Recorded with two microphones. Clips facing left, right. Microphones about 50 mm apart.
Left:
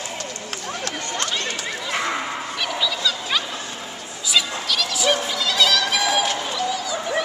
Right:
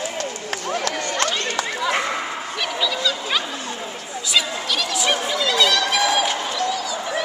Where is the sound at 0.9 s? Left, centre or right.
Right.